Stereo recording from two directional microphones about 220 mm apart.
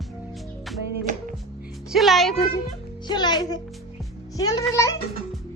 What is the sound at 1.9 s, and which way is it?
Speech, centre (ahead or behind).